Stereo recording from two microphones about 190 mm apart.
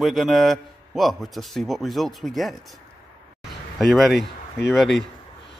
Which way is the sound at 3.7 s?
Centre (ahead or behind).